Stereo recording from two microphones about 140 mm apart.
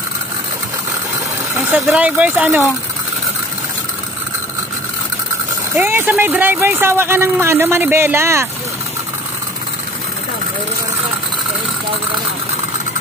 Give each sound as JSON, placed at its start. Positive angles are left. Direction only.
{"t": 1.7, "sound": "speech", "side_deg": -10}
{"t": 5.8, "sound": "speech", "side_deg": -15}